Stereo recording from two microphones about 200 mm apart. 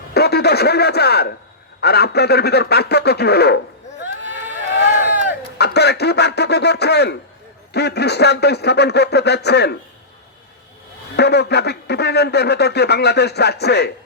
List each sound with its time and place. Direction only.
0.1 s speech: 55° left (ahead or behind)
5.5 s speech: 55° left (ahead or behind)
11.2 s speech: 55° left (ahead or behind)